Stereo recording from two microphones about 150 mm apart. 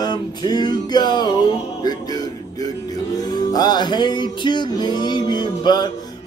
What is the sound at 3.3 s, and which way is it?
Music, 30° left (ahead or behind).